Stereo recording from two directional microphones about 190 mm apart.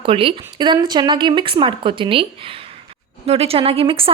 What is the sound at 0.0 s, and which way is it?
A woman's voice, 30° right (ahead or behind).